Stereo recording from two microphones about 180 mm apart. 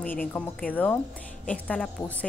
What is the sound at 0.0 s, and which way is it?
A woman's voice, 10° left (ahead or behind).